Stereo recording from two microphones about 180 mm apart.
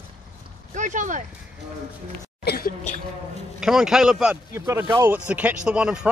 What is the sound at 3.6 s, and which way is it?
Speech, centre (ahead or behind).